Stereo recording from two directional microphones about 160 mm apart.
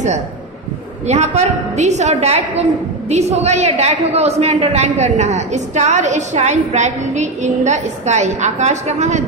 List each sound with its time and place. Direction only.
1.0 s a woman's voice: 45° right (ahead or behind)